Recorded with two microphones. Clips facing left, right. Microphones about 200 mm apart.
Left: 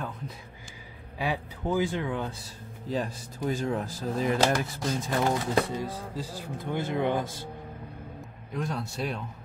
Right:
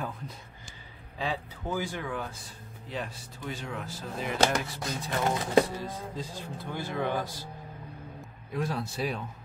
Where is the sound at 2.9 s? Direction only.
40° left (ahead or behind).